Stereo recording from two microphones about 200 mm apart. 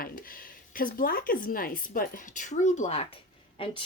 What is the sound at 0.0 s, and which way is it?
A woman's voice, 45° left (ahead or behind).